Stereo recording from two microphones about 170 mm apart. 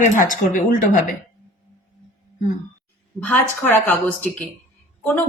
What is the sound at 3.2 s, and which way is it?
Speech, 10° left (ahead or behind).